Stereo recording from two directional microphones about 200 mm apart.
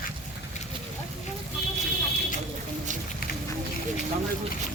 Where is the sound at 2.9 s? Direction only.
40° right (ahead or behind).